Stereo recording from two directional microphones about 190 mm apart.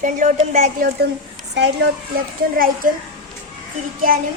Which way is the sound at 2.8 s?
45° right (ahead or behind).